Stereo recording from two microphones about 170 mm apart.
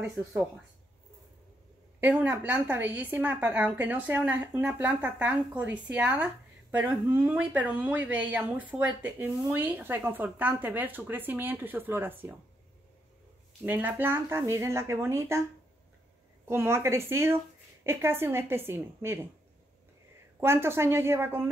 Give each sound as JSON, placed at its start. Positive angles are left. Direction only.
{"t": 0.0, "sound": "speech", "side_deg": -5}
{"t": 2.0, "sound": "a woman's voice", "side_deg": -10}
{"t": 13.7, "sound": "a woman's voice", "side_deg": -10}
{"t": 16.4, "sound": "a woman's voice", "side_deg": -15}
{"t": 20.3, "sound": "a woman's voice", "side_deg": -15}